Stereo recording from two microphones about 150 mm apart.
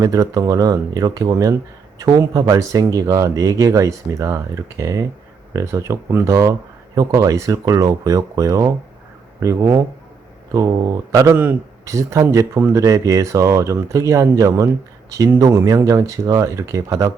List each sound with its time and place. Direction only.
0.0 s speech: 25° right (ahead or behind)